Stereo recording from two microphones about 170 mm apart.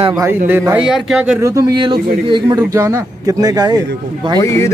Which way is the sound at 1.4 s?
20° right (ahead or behind).